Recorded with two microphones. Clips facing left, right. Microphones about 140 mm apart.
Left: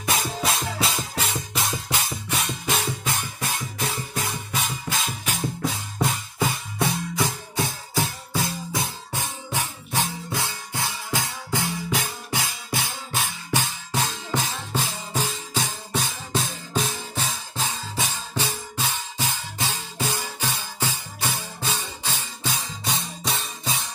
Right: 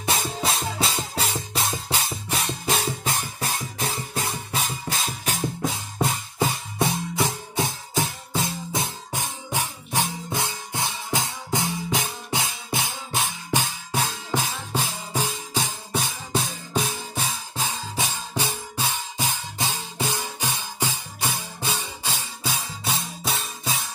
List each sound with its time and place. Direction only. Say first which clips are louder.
0.0 s music: even; 25° right (ahead or behind)
6.4 s music: right 1 dB; 25° right (ahead or behind); by 23.8 s centre (ahead or behind)